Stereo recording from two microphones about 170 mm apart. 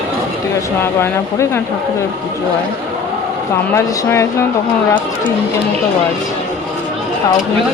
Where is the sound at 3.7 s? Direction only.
15° left (ahead or behind).